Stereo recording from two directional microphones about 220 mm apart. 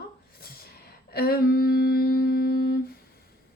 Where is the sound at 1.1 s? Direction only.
45° left (ahead or behind).